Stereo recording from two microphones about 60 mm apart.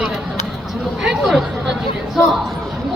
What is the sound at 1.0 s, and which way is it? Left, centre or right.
Speech, centre.